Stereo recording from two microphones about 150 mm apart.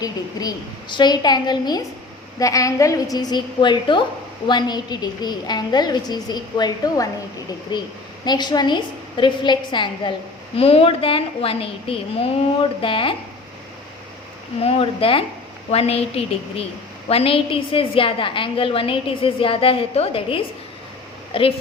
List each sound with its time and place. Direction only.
0.0 s a woman's voice: 25° left (ahead or behind)
8.2 s a woman's voice: 30° left (ahead or behind)
14.6 s a woman's voice: 40° left (ahead or behind)